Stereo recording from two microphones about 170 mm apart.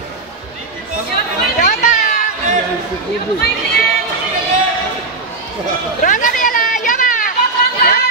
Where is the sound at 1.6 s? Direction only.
50° left (ahead or behind).